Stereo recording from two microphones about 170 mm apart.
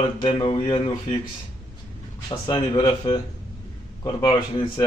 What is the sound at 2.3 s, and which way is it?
Speech, 30° left (ahead or behind).